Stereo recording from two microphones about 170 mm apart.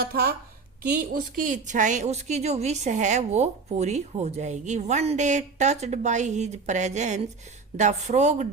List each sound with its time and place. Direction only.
0.0 s a woman's voice: 65° right (ahead or behind); by 8.4 s 40° right (ahead or behind)